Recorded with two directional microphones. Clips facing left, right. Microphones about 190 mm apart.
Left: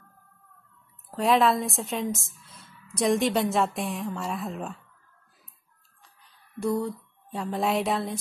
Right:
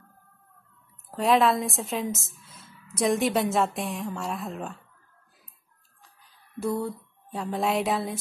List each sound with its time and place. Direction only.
1.1 s speech: centre (ahead or behind)
6.0 s speech: centre (ahead or behind)